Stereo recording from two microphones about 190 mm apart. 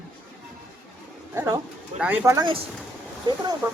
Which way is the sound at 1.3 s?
20° right (ahead or behind).